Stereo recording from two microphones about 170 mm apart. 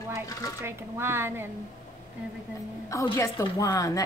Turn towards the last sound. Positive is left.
turn(degrees=20)  # may be behind; listen again after turning